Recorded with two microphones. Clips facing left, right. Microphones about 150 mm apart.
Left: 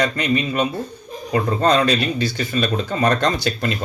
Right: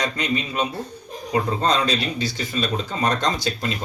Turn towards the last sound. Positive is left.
turn(degrees=65)  # may be behind; listen again after turning